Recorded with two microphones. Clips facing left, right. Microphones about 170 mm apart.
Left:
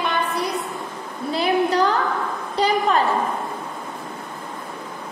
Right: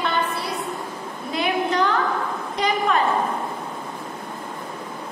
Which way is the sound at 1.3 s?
35° left (ahead or behind).